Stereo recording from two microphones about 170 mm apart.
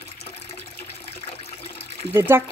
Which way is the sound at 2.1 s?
15° right (ahead or behind).